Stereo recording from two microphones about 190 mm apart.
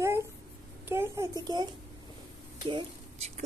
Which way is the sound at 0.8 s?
15° right (ahead or behind).